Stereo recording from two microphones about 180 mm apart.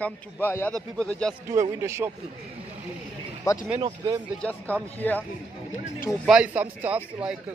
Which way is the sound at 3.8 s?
25° right (ahead or behind).